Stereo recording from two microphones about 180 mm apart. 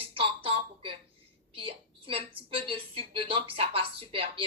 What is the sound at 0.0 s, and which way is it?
Music, 30° right (ahead or behind).